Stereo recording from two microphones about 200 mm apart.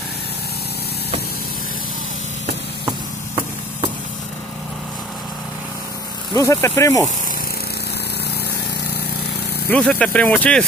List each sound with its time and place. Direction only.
6.3 s speech: 15° left (ahead or behind)
9.7 s speech: 5° left (ahead or behind)